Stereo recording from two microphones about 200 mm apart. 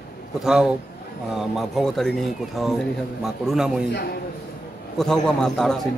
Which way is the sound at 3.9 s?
55° left (ahead or behind).